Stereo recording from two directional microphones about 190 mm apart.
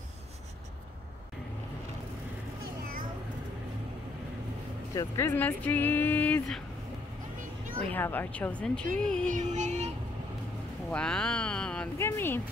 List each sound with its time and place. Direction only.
4.9 s speech: 15° left (ahead or behind)
7.9 s speech: 10° left (ahead or behind)
9.3 s child singing: 35° right (ahead or behind)
10.9 s speech: 5° left (ahead or behind)